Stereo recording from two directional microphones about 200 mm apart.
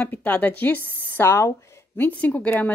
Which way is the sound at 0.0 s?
5° left (ahead or behind).